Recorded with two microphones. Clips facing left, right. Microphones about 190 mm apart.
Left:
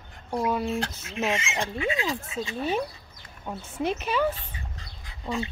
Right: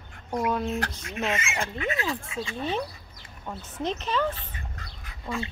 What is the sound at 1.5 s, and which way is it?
Speech, 15° left (ahead or behind).